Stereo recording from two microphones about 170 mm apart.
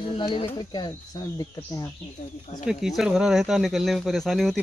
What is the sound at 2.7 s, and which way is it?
Speech, centre (ahead or behind).